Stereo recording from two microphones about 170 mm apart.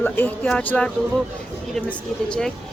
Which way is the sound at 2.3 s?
5° left (ahead or behind).